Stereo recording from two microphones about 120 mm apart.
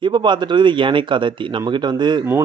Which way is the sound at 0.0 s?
40° right (ahead or behind).